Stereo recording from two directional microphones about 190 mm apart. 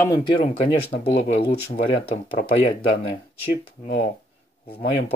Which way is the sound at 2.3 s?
50° left (ahead or behind).